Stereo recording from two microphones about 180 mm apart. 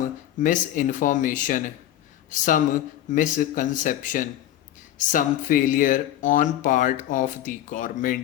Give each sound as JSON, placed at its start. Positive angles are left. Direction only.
{"t": 0.3, "sound": "speech", "side_deg": 50}